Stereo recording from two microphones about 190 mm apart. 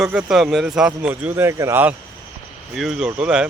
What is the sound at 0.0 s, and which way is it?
Speech, 5° right (ahead or behind).